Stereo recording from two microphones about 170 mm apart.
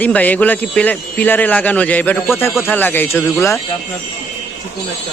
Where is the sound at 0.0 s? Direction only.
10° left (ahead or behind).